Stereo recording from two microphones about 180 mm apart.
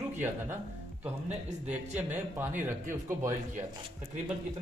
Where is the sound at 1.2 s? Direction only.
40° right (ahead or behind).